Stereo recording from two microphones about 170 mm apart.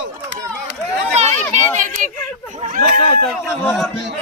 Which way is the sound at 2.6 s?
45° right (ahead or behind).